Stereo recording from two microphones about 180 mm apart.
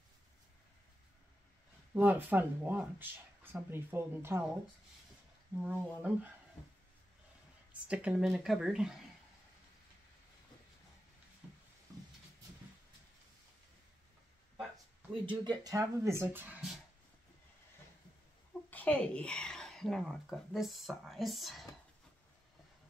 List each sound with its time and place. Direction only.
2.0 s speech: 10° right (ahead or behind)
5.6 s speech: 10° right (ahead or behind)
7.9 s speech: 5° right (ahead or behind)
15.2 s speech: 20° right (ahead or behind)
18.7 s speech: 10° left (ahead or behind)